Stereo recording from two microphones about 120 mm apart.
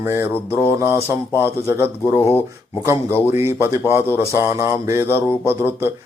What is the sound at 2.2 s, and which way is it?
Speech, 20° left (ahead or behind).